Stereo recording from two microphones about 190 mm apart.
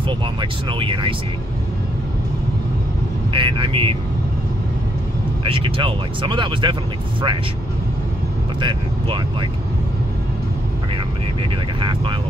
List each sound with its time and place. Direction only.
0.4 s speech: 25° right (ahead or behind)
3.3 s speech: 25° right (ahead or behind)
5.4 s speech: 30° right (ahead or behind)
8.5 s speech: 25° right (ahead or behind)
11.8 s speech: 25° right (ahead or behind)